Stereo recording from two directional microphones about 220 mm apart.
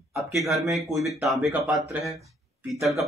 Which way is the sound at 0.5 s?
15° right (ahead or behind).